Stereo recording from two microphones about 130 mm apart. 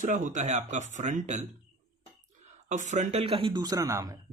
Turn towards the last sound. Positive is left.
turn(degrees=-25)  # may be behind; listen again after turning